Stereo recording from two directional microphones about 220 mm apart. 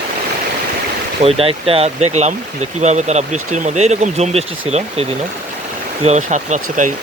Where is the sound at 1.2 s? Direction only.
25° right (ahead or behind).